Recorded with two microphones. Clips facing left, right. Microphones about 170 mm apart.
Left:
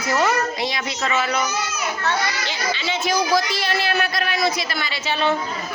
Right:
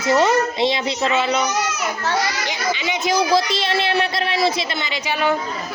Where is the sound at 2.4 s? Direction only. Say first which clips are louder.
Right 2 dB; 15° right (ahead or behind).